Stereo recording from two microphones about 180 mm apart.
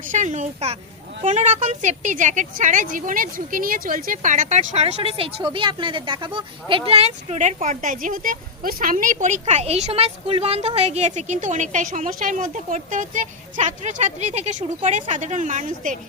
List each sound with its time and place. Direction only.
0.1 s a woman's voice: 40° right (ahead or behind)